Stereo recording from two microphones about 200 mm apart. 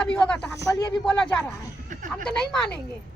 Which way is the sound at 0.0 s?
5° left (ahead or behind).